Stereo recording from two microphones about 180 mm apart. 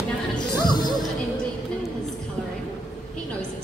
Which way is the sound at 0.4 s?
25° left (ahead or behind).